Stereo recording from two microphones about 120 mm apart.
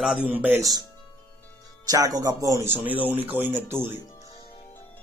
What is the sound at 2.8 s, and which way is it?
Speech, 15° right (ahead or behind).